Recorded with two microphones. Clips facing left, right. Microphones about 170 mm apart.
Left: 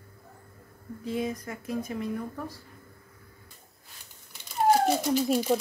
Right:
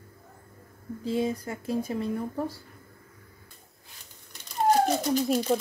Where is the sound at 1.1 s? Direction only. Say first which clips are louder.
Right 3 dB; 30° right (ahead or behind).